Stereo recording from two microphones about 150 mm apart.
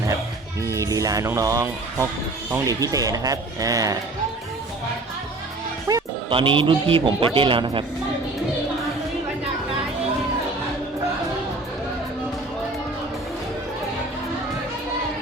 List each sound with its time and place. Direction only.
0.6 s speech: 20° right (ahead or behind)
5.9 s speech: 25° right (ahead or behind)
6.3 s speech: 35° right (ahead or behind)